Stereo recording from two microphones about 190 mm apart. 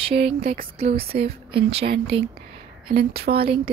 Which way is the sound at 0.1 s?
30° right (ahead or behind).